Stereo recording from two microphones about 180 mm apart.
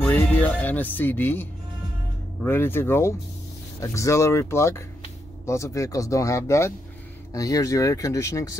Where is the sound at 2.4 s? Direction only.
10° left (ahead or behind).